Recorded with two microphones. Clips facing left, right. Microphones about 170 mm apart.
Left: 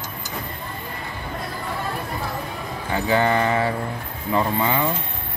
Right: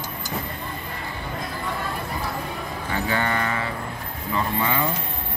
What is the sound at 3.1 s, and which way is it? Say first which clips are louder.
Speech: left 7 dB; 30° left (ahead or behind).